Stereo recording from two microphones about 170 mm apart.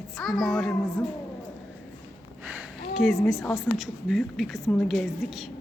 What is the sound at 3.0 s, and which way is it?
A woman's voice, centre (ahead or behind).